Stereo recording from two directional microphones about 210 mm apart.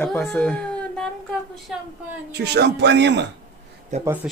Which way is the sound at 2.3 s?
50° right (ahead or behind).